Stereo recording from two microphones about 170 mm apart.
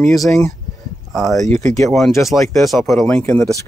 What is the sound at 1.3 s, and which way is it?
Speech, 40° right (ahead or behind).